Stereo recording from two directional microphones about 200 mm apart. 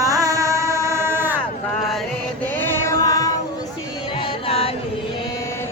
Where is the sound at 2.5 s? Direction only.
10° left (ahead or behind).